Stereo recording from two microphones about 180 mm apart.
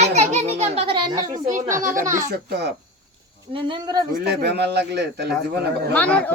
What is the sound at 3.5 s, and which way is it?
Speech, 25° right (ahead or behind).